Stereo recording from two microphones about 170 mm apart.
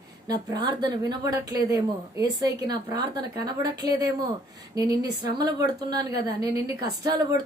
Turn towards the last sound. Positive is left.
turn(degrees=-25)  # may be behind; listen again after turning